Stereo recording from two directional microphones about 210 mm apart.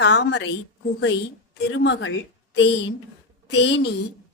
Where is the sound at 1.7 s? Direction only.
65° left (ahead or behind).